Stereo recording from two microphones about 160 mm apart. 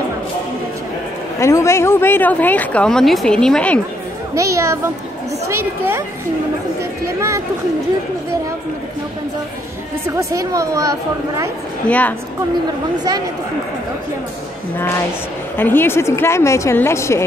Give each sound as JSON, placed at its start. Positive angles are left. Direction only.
{"t": 1.4, "sound": "speech", "side_deg": 20}
{"t": 4.4, "sound": "a woman's voice", "side_deg": -20}
{"t": 7.2, "sound": "a woman's voice", "side_deg": -20}
{"t": 10.0, "sound": "a woman's voice", "side_deg": -20}
{"t": 15.5, "sound": "speech", "side_deg": 10}